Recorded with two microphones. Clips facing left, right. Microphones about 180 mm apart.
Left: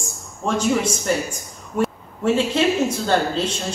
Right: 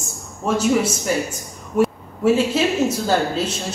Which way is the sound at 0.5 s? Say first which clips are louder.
Right 2 dB; 5° right (ahead or behind).